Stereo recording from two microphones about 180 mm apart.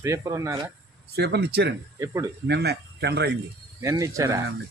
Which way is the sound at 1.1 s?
65° right (ahead or behind).